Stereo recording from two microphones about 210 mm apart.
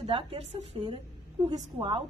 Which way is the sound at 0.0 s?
25° right (ahead or behind).